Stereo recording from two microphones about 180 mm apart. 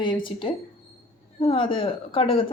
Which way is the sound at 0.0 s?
25° left (ahead or behind).